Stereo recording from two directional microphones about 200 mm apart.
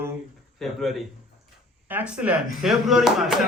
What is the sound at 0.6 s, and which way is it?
Speech, centre (ahead or behind).